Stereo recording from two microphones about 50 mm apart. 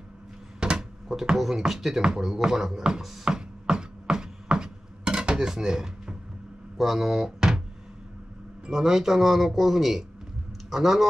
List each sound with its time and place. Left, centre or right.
0.6 s a sound: centre
1.2 s speech: centre
2.4 s chopping: centre
6.8 s speech: centre
8.6 s speech: centre